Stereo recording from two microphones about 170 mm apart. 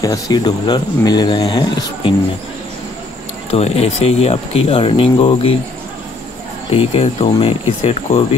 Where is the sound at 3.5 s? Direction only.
35° left (ahead or behind).